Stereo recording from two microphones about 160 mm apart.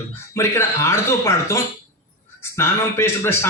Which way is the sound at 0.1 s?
15° left (ahead or behind).